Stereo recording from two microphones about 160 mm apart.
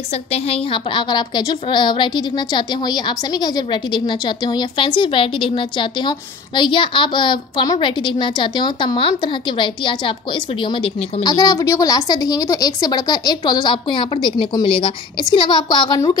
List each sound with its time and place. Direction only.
0.1 s a woman's voice: 40° left (ahead or behind)